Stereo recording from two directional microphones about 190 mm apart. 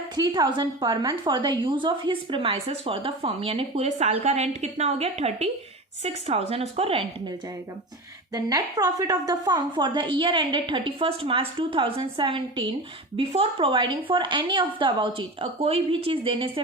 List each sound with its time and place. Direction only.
0.2 s a woman's voice: 20° right (ahead or behind)
8.3 s a woman's voice: 20° right (ahead or behind)